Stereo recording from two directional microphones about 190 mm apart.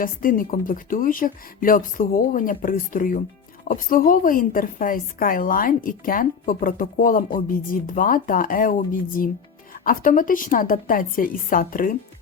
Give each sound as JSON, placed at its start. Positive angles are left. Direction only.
{"t": 0.0, "sound": "a woman's voice", "side_deg": 50}